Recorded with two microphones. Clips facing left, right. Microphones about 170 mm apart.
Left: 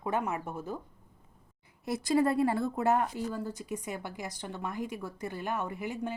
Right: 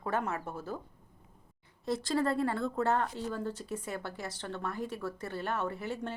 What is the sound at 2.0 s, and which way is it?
Speech, 20° left (ahead or behind).